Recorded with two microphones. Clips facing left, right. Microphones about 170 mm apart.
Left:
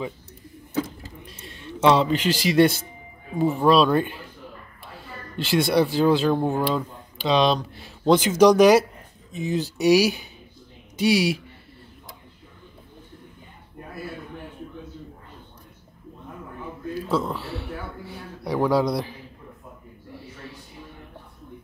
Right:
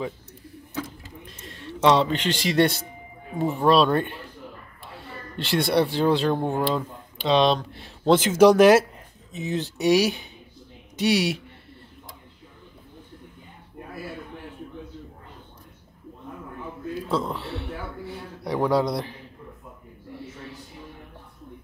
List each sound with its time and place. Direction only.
1.2 s a man's voice: centre (ahead or behind)
4.9 s a sound: centre (ahead or behind)
5.9 s speech: centre (ahead or behind)
17.1 s a man's voice: centre (ahead or behind)